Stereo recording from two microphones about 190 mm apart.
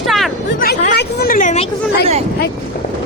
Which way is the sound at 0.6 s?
55° left (ahead or behind).